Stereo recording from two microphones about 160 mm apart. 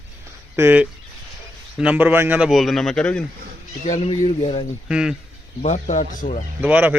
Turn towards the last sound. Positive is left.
turn(degrees=-10)  # may be behind; listen again after turning